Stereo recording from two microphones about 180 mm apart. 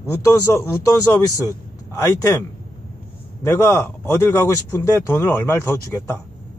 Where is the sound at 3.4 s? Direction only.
15° left (ahead or behind).